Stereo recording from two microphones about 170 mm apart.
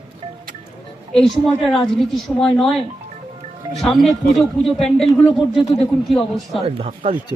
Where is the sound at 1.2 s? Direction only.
Centre (ahead or behind).